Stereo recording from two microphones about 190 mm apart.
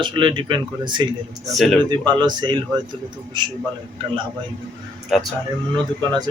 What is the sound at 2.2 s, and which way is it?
Speech, 25° right (ahead or behind).